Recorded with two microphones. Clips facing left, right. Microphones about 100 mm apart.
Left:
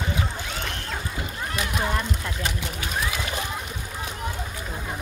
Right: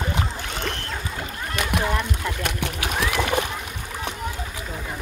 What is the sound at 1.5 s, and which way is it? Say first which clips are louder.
Splash: right 3 dB; 70° right (ahead or behind).